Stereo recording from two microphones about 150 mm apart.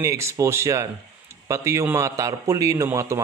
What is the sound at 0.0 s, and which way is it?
A man's voice, 20° right (ahead or behind).